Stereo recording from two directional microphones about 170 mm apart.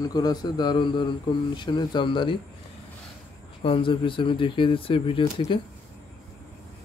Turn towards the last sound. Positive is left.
turn(degrees=30)  # may be behind; listen again after turning